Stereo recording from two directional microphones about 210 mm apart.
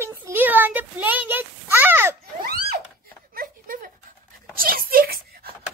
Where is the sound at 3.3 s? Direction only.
40° right (ahead or behind).